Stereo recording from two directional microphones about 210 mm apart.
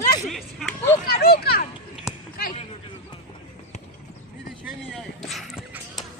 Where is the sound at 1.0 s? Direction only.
50° left (ahead or behind).